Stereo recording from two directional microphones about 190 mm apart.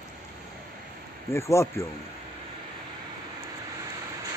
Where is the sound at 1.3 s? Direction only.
15° left (ahead or behind).